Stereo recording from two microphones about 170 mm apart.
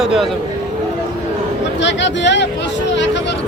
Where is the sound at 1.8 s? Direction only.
90° left.